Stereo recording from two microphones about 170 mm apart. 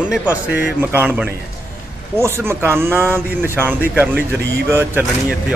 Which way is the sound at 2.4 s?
15° right (ahead or behind).